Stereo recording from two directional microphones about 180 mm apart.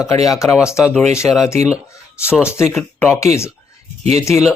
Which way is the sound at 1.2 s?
10° left (ahead or behind).